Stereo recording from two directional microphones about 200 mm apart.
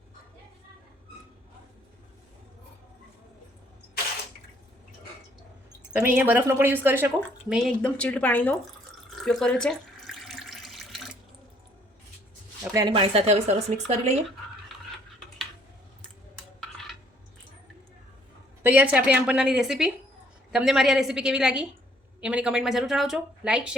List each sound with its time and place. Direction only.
6.1 s speech: 10° right (ahead or behind)
7.2 s speech: 5° left (ahead or behind)
9.0 s water tap: 5° left (ahead or behind)
12.7 s speech: 25° right (ahead or behind)
18.6 s speech: 10° right (ahead or behind)